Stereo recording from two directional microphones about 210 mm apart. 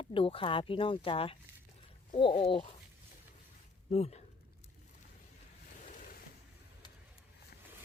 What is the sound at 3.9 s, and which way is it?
Speech, 30° left (ahead or behind).